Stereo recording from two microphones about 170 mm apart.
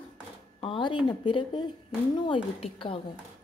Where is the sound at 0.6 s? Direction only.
30° left (ahead or behind).